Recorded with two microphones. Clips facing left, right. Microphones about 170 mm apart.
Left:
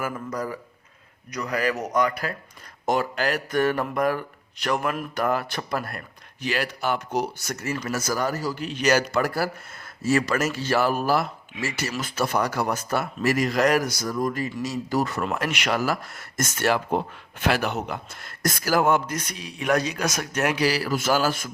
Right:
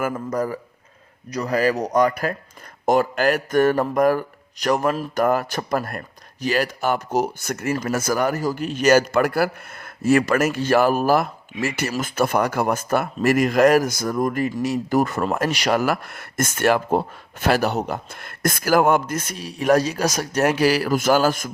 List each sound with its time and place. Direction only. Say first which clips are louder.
0.0 s speech: right 6 dB; 50° right (ahead or behind)
15.8 s speech: right 4 dB; 60° right (ahead or behind)